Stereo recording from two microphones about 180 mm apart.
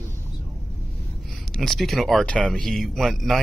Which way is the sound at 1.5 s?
Centre (ahead or behind).